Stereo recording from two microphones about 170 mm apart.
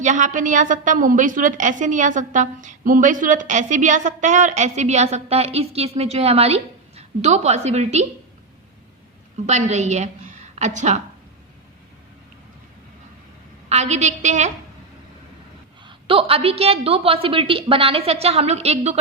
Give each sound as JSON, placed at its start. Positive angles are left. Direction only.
{"t": 0.0, "sound": "a woman's voice", "side_deg": -45}
{"t": 9.5, "sound": "a woman's voice", "side_deg": -45}
{"t": 13.7, "sound": "a woman's voice", "side_deg": -40}
{"t": 15.9, "sound": "a woman's voice", "side_deg": -30}